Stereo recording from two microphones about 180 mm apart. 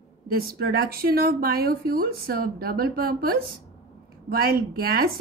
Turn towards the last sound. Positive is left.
turn(degrees=-55)  # may be behind; listen again after turning